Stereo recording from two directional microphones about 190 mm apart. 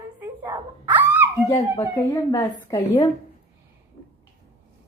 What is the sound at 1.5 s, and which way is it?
A woman's voice, 15° left (ahead or behind).